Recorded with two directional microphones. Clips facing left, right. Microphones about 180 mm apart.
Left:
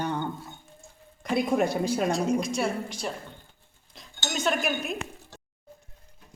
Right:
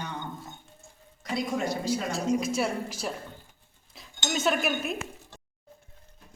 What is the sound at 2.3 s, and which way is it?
Speech, 5° right (ahead or behind).